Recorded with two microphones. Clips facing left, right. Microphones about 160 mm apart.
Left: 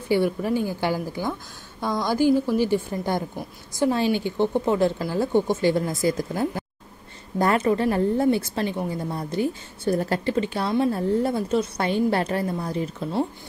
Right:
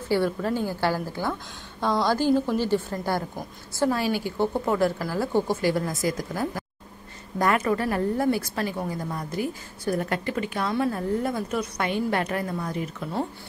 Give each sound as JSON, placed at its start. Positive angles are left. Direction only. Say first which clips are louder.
{"t": 0.1, "sound": "a woman's voice", "louder": "left 2 dB", "side_deg": 15}